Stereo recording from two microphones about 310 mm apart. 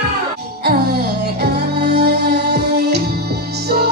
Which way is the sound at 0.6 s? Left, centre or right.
Right.